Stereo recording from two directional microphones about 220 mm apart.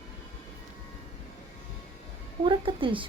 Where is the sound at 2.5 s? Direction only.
25° right (ahead or behind).